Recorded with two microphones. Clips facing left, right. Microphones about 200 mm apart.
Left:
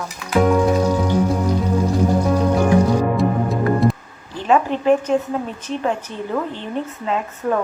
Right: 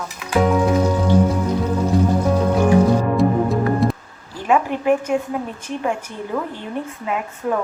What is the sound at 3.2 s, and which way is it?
Music, centre (ahead or behind).